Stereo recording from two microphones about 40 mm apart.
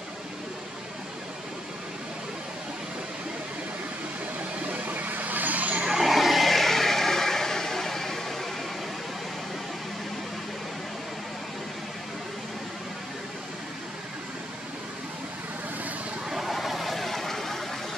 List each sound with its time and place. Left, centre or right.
4.6 s vehicle: right
5.9 s vehicle: centre
16.3 s vehicle: centre